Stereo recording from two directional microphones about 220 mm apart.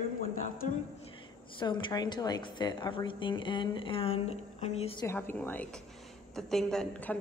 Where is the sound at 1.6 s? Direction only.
20° left (ahead or behind).